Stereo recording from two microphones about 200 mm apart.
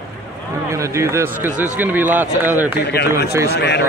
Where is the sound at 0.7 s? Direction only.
15° right (ahead or behind).